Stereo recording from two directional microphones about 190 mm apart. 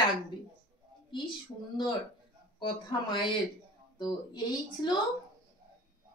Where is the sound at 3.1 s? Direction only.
25° left (ahead or behind).